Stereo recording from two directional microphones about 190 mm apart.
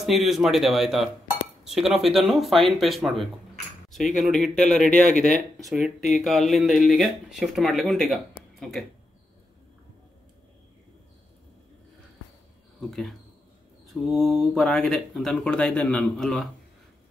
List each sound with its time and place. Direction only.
0.0 s speech: centre (ahead or behind)
5.1 s speech: 40° left (ahead or behind)
5.6 s speech: centre (ahead or behind)
12.8 s speech: centre (ahead or behind)
14.1 s speech: centre (ahead or behind)